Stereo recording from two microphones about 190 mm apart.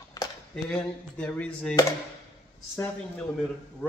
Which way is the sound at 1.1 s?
5° left (ahead or behind).